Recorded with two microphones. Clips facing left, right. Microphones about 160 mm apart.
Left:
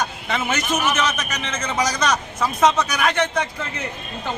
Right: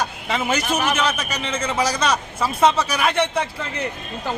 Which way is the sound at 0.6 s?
30° right (ahead or behind).